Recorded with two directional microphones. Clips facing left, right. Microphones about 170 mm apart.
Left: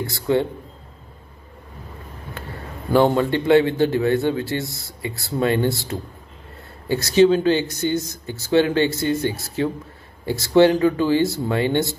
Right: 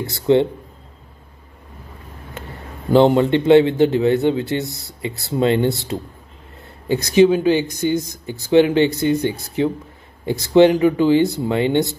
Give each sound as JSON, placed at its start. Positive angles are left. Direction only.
{"t": 0.0, "sound": "speech", "side_deg": -20}
{"t": 2.9, "sound": "speech", "side_deg": -20}